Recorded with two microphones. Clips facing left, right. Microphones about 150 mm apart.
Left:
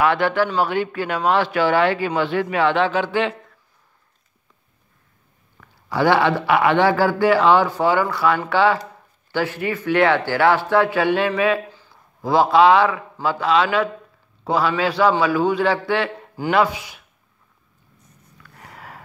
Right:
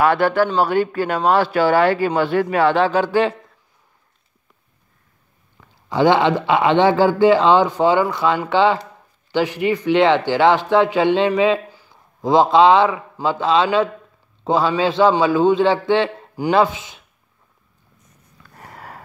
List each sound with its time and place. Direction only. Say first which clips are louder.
0.0 s speech: right 2 dB; 40° right (ahead or behind)
5.6 s speech: right 3 dB; 20° right (ahead or behind)
18.6 s a sound: right 3 dB; 40° right (ahead or behind)